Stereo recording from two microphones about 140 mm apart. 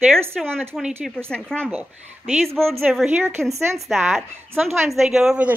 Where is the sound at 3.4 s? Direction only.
20° right (ahead or behind).